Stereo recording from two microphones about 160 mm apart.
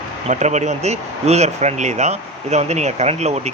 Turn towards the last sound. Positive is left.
turn(degrees=-45)  # may be behind; listen again after turning